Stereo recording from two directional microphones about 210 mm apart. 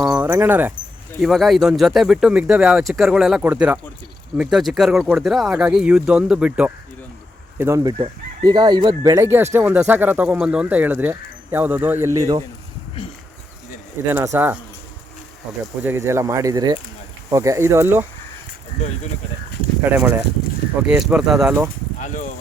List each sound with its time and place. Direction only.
0.1 s speech: 10° right (ahead or behind)
13.0 s insect: 25° left (ahead or behind)
14.0 s speech: 10° right (ahead or behind)
15.8 s speech: 10° right (ahead or behind)
19.9 s speech: 10° right (ahead or behind)
21.9 s speech: 35° left (ahead or behind)